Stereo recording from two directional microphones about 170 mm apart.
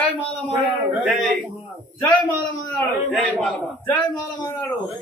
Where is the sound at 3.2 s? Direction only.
10° left (ahead or behind).